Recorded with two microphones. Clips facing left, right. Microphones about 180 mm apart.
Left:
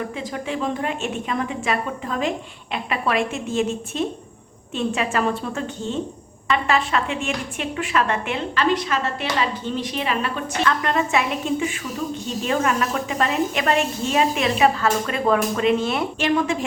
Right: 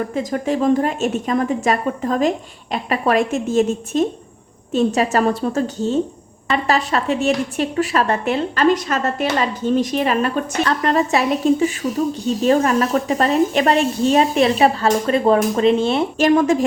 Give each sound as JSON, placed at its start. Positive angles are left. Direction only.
{"t": 0.1, "sound": "speech", "side_deg": -45}
{"t": 16.1, "sound": "a woman's voice", "side_deg": -40}